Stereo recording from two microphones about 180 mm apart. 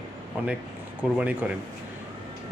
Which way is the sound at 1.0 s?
10° right (ahead or behind).